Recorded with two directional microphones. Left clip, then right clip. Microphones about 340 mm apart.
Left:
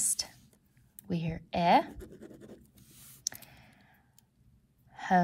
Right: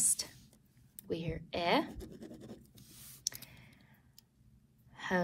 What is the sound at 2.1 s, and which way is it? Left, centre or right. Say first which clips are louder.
Scratch: left 1 dB; centre.